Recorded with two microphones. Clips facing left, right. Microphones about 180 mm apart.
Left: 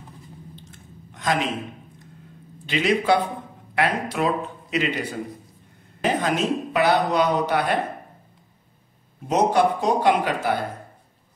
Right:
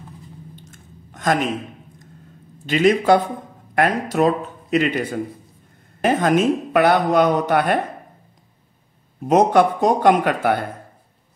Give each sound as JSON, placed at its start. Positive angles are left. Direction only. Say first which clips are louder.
{"t": 0.7, "sound": "a sound", "louder": "even", "side_deg": -45}
{"t": 2.6, "sound": "speech", "louder": "right 6 dB", "side_deg": -45}
{"t": 9.3, "sound": "speech", "louder": "right 4 dB", "side_deg": -50}